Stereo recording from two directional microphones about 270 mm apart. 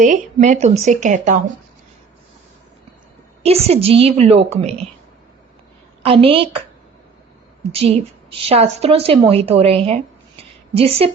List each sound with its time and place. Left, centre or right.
0.0 s a woman's voice: right
3.4 s a woman's voice: right
6.0 s a woman's voice: right
7.7 s a woman's voice: right